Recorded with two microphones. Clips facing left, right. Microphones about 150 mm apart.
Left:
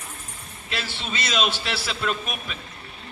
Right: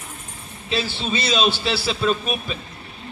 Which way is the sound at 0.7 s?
30° right (ahead or behind).